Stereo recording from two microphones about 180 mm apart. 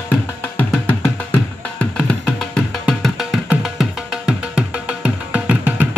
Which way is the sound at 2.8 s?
Centre (ahead or behind).